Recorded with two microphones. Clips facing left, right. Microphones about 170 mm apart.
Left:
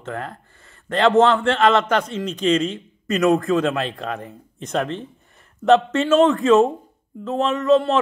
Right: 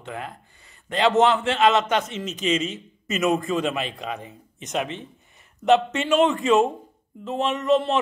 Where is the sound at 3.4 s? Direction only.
Centre (ahead or behind).